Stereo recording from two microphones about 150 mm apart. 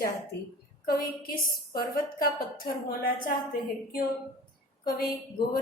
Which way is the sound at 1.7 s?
80° left.